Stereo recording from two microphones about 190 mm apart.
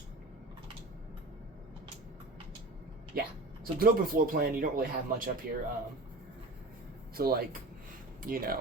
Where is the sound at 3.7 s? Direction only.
50° right (ahead or behind).